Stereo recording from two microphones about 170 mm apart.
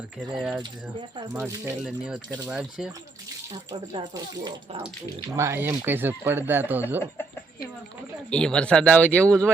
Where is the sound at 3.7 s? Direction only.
25° right (ahead or behind); by 7.0 s 10° right (ahead or behind).